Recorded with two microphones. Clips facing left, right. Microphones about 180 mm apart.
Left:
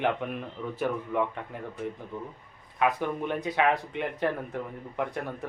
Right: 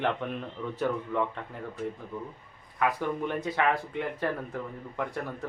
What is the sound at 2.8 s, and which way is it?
Speech, 20° left (ahead or behind).